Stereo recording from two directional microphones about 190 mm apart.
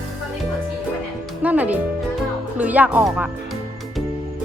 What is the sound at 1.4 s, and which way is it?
Speech, 10° right (ahead or behind).